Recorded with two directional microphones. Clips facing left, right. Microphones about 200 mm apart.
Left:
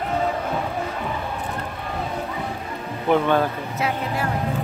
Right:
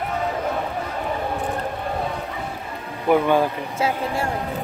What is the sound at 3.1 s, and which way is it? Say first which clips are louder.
Speech: right 1 dB; 10° right (ahead or behind).